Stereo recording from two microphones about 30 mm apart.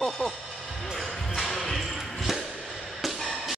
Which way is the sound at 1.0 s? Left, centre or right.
Centre.